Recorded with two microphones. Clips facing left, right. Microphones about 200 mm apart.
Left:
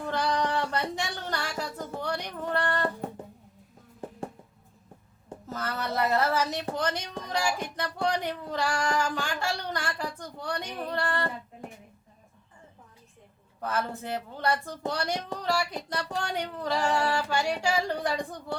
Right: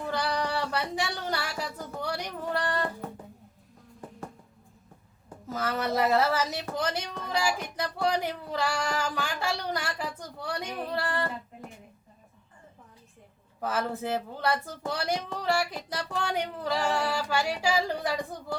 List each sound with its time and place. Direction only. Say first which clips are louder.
0.1 s a sound: left 2 dB; 10° right (ahead or behind)
5.5 s speech: right 3 dB; 5° right (ahead or behind)
13.6 s female singing: right 1 dB; 5° right (ahead or behind)